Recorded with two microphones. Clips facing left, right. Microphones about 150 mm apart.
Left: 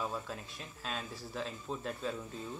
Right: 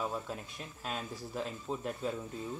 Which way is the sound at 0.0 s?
15° right (ahead or behind).